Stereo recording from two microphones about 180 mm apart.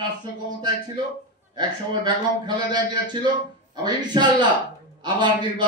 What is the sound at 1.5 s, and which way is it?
A man's voice, 25° right (ahead or behind).